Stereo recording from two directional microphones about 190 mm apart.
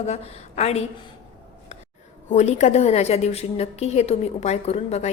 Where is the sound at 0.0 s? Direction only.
35° left (ahead or behind).